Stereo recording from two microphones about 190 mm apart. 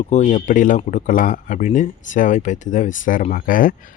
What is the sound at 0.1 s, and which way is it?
Speech, 40° left (ahead or behind).